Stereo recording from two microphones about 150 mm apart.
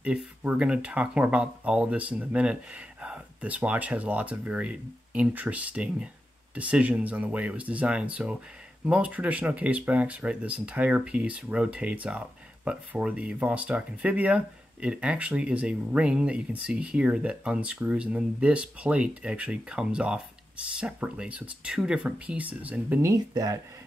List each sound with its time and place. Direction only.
0.0 s speech: 5° right (ahead or behind)
23.0 s speech: 25° right (ahead or behind)